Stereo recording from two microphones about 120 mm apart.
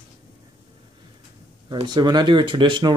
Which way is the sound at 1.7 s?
35° right (ahead or behind).